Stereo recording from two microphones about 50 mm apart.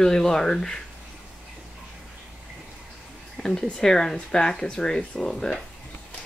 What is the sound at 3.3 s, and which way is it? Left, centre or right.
Speech, centre.